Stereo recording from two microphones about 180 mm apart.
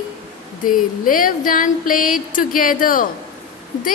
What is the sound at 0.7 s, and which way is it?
A woman's voice, 50° left (ahead or behind).